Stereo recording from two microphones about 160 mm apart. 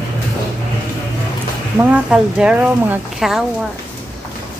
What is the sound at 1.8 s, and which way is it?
Speech, 5° right (ahead or behind).